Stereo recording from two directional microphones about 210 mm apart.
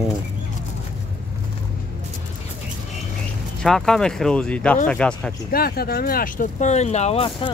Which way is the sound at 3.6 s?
5° left (ahead or behind).